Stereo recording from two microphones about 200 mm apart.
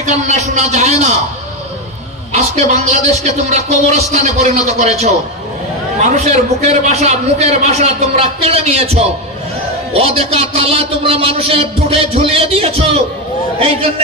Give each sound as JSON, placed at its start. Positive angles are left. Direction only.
{"t": 0.0, "sound": "a man's voice", "side_deg": -35}
{"t": 2.3, "sound": "a man's voice", "side_deg": -35}